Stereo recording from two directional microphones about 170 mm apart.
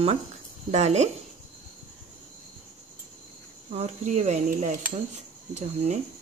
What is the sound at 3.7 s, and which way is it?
Speech, 45° right (ahead or behind).